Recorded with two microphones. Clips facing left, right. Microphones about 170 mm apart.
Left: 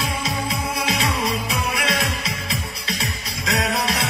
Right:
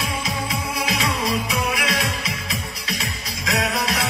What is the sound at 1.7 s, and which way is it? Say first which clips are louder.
Music: left 1 dB; 30° left (ahead or behind).